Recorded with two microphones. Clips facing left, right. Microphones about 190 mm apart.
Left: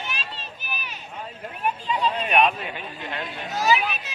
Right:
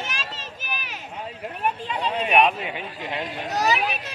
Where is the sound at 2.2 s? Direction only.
10° right (ahead or behind).